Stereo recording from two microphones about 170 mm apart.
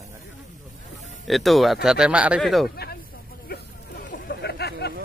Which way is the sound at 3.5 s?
60° left (ahead or behind).